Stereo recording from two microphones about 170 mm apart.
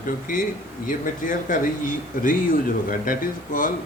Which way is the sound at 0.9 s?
50° left (ahead or behind).